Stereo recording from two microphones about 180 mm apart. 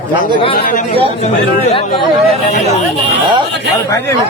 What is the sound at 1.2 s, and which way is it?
Speech, 35° left (ahead or behind).